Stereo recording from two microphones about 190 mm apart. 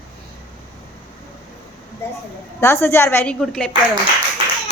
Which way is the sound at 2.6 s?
15° left (ahead or behind).